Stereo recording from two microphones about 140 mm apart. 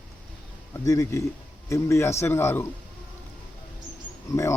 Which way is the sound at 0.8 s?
25° left (ahead or behind).